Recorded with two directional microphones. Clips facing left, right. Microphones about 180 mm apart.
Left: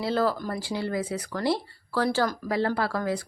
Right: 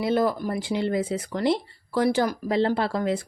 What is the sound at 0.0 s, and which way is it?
Speech, 20° right (ahead or behind).